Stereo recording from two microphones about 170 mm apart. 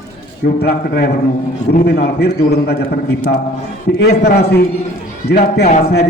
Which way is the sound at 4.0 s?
70° left (ahead or behind).